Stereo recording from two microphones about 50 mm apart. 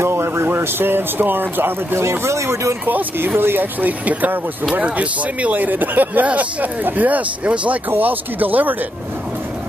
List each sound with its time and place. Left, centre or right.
0.0 s speech: right
2.0 s speech: right
2.9 s speech: right
3.8 s speech: right
7.9 s speech: right